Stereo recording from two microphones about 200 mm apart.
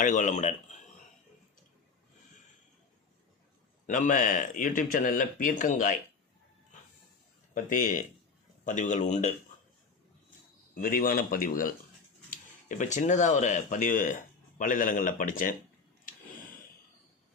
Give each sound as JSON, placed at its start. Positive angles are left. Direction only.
{"t": 0.0, "sound": "speech", "side_deg": 40}
{"t": 3.8, "sound": "speech", "side_deg": 40}
{"t": 7.5, "sound": "speech", "side_deg": 40}
{"t": 10.8, "sound": "speech", "side_deg": 45}